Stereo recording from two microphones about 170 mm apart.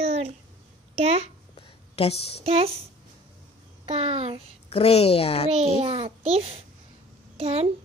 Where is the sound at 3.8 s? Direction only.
35° right (ahead or behind).